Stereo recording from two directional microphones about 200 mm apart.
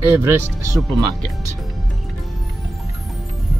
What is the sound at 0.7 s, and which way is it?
Speech, centre (ahead or behind).